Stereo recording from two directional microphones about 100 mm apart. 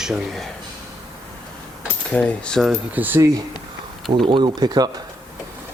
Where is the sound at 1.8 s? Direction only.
10° left (ahead or behind).